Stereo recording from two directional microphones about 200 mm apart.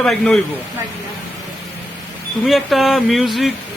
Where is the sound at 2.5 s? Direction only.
Centre (ahead or behind).